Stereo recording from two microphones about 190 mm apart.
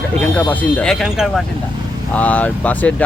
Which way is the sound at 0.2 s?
10° left (ahead or behind).